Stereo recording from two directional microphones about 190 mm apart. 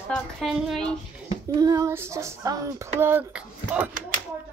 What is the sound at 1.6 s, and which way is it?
Speech, 20° right (ahead or behind).